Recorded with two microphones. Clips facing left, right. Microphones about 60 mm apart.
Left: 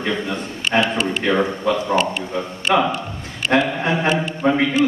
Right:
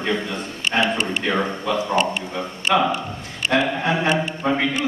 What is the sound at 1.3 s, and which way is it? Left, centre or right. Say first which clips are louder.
Speech: left 5 dB; left.